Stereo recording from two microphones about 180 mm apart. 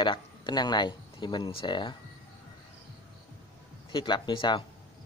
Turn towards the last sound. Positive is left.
turn(degrees=25)  # may be behind; listen again after turning